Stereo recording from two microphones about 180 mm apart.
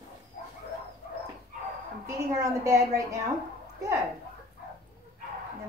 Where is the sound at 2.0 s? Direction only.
15° right (ahead or behind).